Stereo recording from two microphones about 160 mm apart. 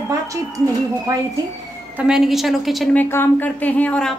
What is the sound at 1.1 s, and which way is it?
Speech, 20° right (ahead or behind).